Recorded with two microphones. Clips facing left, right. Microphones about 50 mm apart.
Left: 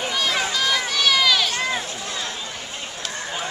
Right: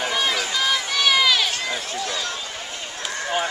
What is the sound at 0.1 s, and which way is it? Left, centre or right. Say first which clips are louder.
Run: even; centre.